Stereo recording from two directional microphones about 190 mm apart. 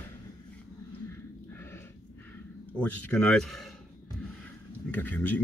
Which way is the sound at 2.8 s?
5° left (ahead or behind).